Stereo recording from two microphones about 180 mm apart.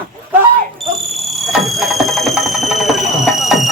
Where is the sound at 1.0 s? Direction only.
Centre (ahead or behind).